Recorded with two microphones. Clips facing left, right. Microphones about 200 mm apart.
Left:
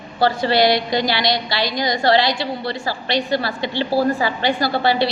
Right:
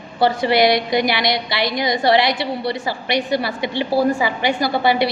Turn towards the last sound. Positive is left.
turn(degrees=-20)  # may be behind; listen again after turning